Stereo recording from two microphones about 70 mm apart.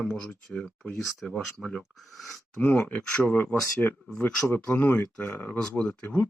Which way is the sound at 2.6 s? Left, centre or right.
Left.